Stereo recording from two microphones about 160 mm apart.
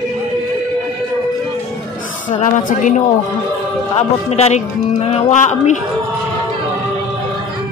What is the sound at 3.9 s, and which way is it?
Speech, 40° left (ahead or behind).